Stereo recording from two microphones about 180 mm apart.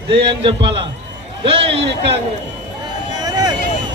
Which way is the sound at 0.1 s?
30° right (ahead or behind).